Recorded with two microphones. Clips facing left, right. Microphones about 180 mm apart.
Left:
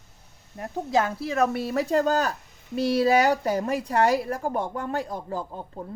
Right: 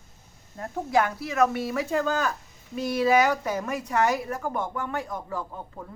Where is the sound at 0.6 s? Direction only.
25° left (ahead or behind).